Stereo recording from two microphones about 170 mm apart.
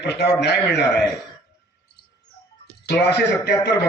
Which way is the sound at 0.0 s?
80° left.